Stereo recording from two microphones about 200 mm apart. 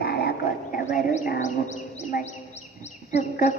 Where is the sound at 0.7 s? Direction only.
40° left (ahead or behind).